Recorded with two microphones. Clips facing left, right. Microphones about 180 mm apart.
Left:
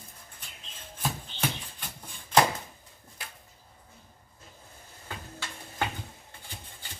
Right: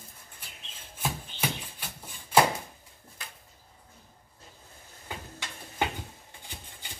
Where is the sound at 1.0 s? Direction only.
10° right (ahead or behind).